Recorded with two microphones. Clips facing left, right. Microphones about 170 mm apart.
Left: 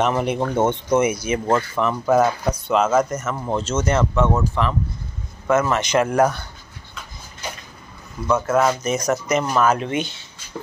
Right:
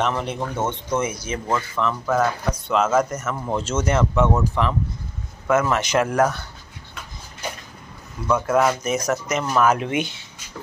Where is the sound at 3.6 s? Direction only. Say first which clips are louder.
Left 1 dB; 10° right (ahead or behind).